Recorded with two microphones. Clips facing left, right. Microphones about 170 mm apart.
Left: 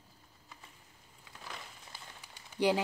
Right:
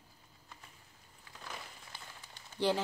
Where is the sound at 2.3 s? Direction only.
15° left (ahead or behind).